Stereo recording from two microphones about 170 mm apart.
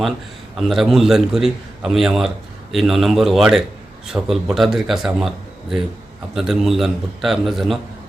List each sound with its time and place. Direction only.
0.5 s a man's voice: centre (ahead or behind)